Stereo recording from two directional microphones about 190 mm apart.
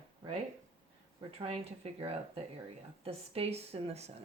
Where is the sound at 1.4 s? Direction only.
30° right (ahead or behind).